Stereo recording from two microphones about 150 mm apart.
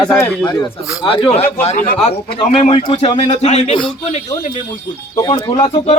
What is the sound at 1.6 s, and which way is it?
Speech, 55° left (ahead or behind).